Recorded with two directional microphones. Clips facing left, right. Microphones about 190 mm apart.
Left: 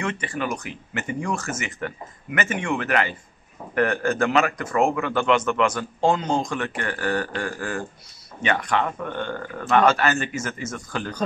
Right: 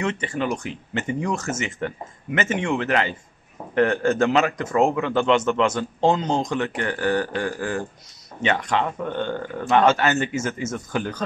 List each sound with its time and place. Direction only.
0.0 s a man's voice: 20° right (ahead or behind)